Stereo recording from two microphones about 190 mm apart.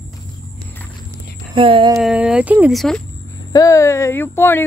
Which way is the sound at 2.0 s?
5° right (ahead or behind).